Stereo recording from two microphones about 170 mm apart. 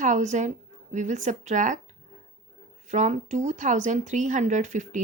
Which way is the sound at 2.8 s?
45° right (ahead or behind).